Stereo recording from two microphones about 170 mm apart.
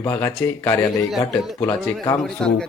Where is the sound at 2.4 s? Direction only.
5° left (ahead or behind).